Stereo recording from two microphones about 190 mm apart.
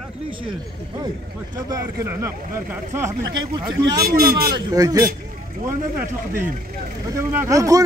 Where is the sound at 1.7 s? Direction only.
15° right (ahead or behind).